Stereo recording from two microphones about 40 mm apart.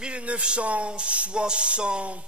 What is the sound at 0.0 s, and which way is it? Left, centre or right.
Speech, right.